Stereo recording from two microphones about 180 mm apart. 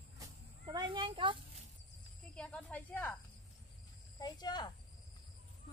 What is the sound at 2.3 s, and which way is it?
Speech, 5° left (ahead or behind).